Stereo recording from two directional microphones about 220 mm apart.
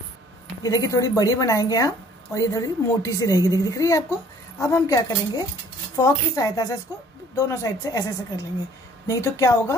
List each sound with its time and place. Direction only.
0.6 s speech: 15° left (ahead or behind)